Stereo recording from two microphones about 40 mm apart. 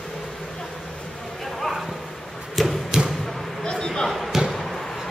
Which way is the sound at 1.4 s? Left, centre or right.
Centre.